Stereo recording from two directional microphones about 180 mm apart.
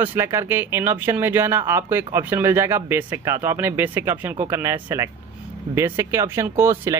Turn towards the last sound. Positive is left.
turn(degrees=-15)  # may be behind; listen again after turning